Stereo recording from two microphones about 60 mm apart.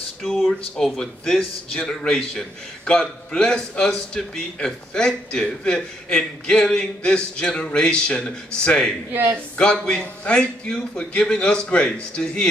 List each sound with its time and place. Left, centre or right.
0.8 s a man's voice: centre
9.1 s speech: right
9.6 s a man's voice: centre